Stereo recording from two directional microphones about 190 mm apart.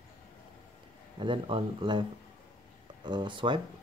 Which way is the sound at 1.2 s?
25° right (ahead or behind).